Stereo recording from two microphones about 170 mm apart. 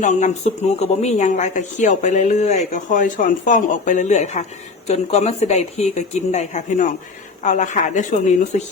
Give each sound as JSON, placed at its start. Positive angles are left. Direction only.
{"t": 0.0, "sound": "a woman's voice", "side_deg": 45}